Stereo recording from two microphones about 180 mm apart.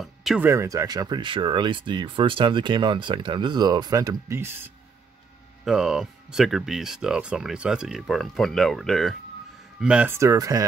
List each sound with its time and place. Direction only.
0.0 s music: centre (ahead or behind)
0.5 s speech: 15° right (ahead or behind)
5.7 s speech: 5° right (ahead or behind); by 10.6 s 20° right (ahead or behind)